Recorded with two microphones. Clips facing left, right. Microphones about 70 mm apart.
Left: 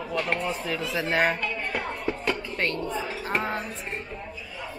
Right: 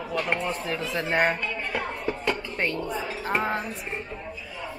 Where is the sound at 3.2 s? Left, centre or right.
Right.